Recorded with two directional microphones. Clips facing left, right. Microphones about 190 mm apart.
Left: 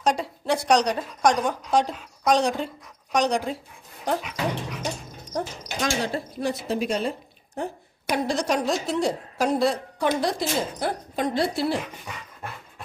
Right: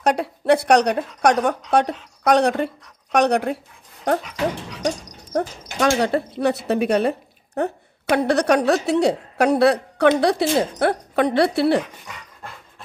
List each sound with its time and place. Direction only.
0.0 s a woman's voice: 60° right (ahead or behind)
5.3 s a woman's voice: 60° right (ahead or behind)